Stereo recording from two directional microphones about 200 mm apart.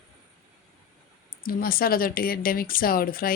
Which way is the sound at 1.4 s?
45° left (ahead or behind).